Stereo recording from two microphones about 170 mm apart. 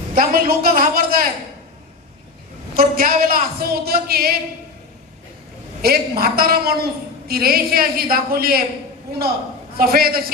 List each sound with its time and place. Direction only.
0.1 s a woman's voice: 55° right (ahead or behind)
2.7 s a woman's voice: 60° right (ahead or behind)
5.8 s a woman's voice: 65° right (ahead or behind)
9.7 s a woman's voice: 60° right (ahead or behind)